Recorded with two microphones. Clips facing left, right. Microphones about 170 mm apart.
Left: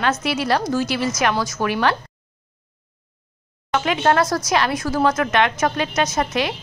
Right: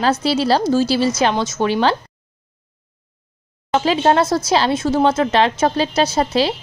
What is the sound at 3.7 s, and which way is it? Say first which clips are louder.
A woman's voice: right 3 dB; 30° right (ahead or behind).